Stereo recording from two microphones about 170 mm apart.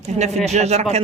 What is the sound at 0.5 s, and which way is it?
Speech, 40° right (ahead or behind).